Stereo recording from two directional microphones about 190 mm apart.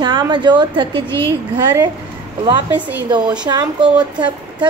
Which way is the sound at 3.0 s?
25° right (ahead or behind).